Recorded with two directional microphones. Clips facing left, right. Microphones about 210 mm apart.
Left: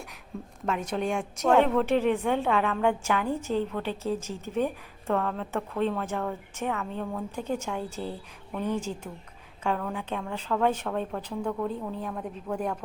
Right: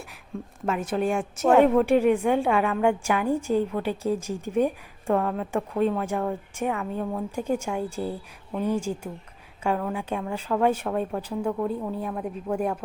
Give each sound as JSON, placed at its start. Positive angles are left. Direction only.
{"t": 0.6, "sound": "a woman's voice", "side_deg": -5}